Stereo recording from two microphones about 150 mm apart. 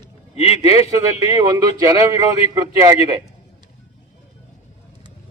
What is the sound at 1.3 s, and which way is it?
Speech, 20° right (ahead or behind).